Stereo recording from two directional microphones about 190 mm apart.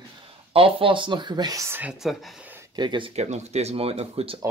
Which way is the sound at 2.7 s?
25° right (ahead or behind).